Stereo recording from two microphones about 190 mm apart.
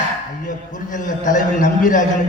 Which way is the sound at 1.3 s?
40° left (ahead or behind).